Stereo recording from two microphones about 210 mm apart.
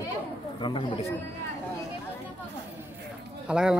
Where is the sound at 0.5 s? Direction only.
25° left (ahead or behind).